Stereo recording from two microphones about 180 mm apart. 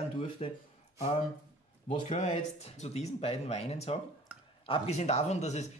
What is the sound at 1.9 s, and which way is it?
Speech, 45° left (ahead or behind).